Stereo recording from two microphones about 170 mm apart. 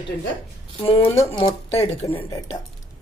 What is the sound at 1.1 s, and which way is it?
Speech, 15° left (ahead or behind).